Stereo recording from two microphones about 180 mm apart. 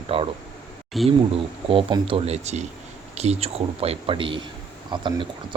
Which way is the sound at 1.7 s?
30° right (ahead or behind).